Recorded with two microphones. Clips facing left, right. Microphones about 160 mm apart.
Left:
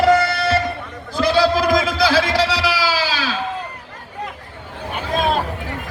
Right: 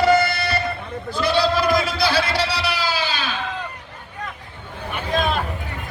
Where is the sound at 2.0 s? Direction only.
90° left.